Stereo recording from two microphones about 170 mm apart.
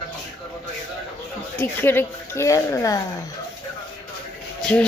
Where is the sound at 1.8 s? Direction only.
15° left (ahead or behind).